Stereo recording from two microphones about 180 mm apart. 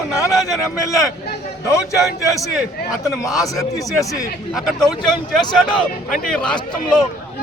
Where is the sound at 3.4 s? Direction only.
20° left (ahead or behind).